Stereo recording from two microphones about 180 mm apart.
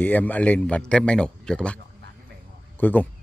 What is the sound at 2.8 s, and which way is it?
Speech, 10° left (ahead or behind).